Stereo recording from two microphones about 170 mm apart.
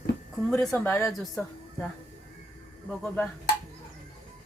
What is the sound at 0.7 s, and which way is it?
A woman's voice, 15° left (ahead or behind).